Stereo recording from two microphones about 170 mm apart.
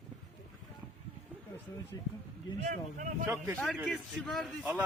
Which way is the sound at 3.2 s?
15° right (ahead or behind).